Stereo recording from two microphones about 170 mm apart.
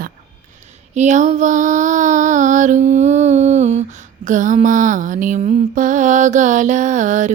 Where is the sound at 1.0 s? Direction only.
45° right (ahead or behind).